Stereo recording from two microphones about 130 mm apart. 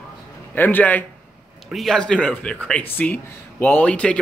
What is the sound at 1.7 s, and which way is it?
Speech, 5° left (ahead or behind).